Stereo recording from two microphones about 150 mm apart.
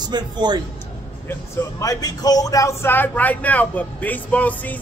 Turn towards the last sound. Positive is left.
turn(degrees=10)  # may be behind; listen again after turning